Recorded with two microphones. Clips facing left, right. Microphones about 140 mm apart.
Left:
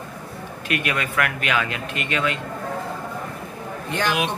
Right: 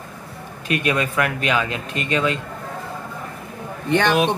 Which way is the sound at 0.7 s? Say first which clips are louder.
Right 4 dB; 25° right (ahead or behind).